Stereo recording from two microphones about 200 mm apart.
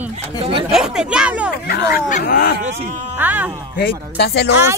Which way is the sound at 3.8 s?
55° left (ahead or behind).